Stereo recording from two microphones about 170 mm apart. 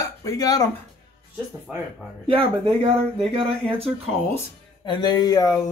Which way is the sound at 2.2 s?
35° right (ahead or behind).